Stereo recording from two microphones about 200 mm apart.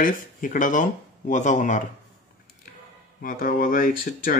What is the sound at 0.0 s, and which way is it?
Speech, 40° left (ahead or behind).